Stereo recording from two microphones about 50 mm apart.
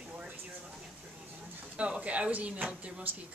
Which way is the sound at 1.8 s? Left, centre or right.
Right.